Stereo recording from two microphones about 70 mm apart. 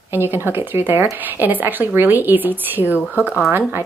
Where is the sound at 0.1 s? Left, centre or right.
Right.